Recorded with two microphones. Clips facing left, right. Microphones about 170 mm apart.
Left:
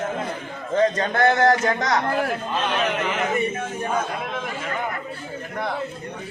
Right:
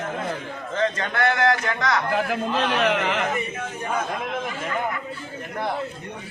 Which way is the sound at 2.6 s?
75° right (ahead or behind).